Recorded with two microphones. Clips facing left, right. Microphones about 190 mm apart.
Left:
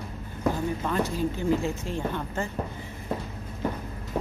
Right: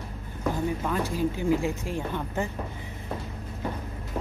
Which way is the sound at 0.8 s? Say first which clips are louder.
Left 2 dB; 10° right (ahead or behind).